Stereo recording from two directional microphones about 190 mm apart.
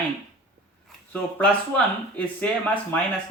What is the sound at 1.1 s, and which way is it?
Speech, 10° left (ahead or behind).